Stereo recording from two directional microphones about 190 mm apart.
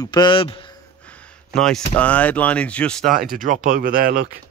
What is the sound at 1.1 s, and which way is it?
Speech, 5° left (ahead or behind).